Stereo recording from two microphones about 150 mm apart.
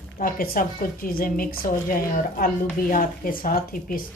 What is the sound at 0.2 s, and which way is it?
A woman's voice, 75° left (ahead or behind).